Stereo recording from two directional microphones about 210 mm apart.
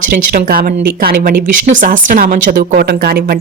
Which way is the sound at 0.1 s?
45° right (ahead or behind).